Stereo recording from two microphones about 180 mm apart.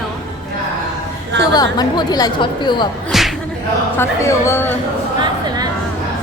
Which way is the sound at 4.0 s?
15° left (ahead or behind).